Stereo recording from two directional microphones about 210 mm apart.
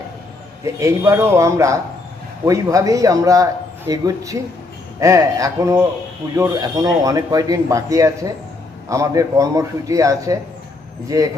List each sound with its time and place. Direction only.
0.6 s a man's voice: 15° right (ahead or behind)